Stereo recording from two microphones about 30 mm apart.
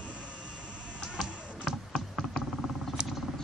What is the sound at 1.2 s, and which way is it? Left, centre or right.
Chop, centre.